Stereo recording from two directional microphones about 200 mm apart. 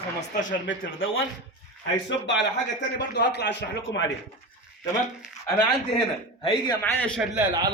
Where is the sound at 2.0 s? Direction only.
60° left (ahead or behind).